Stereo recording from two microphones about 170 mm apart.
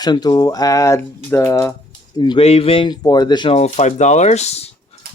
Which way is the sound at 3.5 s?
40° left (ahead or behind).